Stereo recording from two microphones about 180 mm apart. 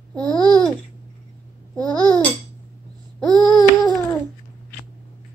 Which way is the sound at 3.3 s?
25° right (ahead or behind).